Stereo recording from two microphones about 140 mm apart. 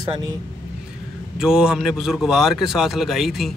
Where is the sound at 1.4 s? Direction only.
5° right (ahead or behind).